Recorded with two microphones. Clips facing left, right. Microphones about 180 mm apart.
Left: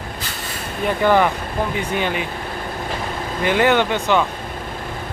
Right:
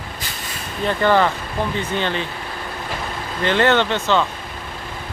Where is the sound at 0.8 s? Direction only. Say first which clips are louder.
Left 1 dB; 10° left (ahead or behind).